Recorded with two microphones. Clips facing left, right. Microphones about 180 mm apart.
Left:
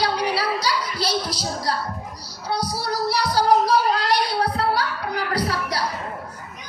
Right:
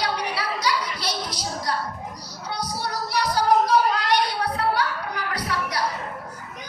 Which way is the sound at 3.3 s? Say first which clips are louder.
Left 1 dB; 35° left (ahead or behind).